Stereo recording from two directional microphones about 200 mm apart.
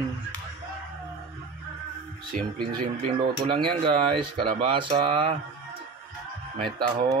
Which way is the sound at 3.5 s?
25° right (ahead or behind).